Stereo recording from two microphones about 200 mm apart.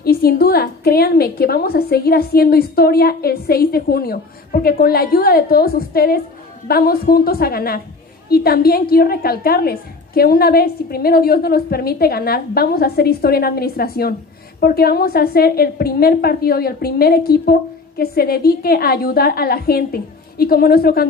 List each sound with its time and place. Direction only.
0.0 s a woman's voice: 50° left (ahead or behind)